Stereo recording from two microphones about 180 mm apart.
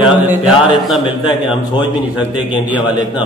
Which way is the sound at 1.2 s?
25° left (ahead or behind).